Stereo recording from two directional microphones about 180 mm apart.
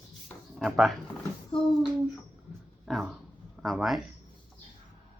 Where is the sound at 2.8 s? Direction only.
Centre (ahead or behind).